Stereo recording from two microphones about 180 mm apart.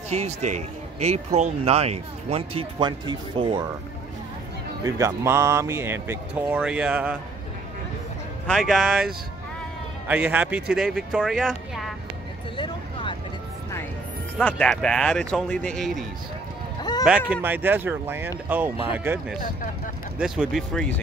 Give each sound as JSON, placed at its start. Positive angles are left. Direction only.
{"t": 0.1, "sound": "speech", "side_deg": -40}
{"t": 4.8, "sound": "speech", "side_deg": -15}
{"t": 8.5, "sound": "speech", "side_deg": 0}
{"t": 12.5, "sound": "a sound", "side_deg": 25}
{"t": 14.4, "sound": "speech", "side_deg": 5}
{"t": 17.3, "sound": "speech", "side_deg": -10}
{"t": 20.2, "sound": "speech", "side_deg": -5}